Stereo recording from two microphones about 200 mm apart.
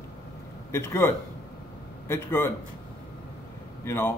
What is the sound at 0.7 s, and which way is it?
A man's voice, 10° left (ahead or behind).